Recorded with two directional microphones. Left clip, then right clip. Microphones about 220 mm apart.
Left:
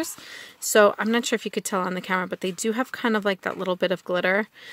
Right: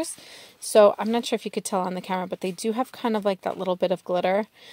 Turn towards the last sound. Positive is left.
turn(degrees=15)  # may be behind; listen again after turning